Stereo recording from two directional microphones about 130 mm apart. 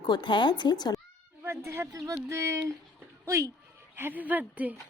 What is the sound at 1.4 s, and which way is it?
A woman's voice, 20° right (ahead or behind).